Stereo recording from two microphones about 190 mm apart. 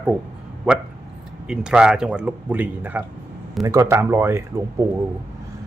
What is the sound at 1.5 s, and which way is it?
A man's voice, 5° right (ahead or behind).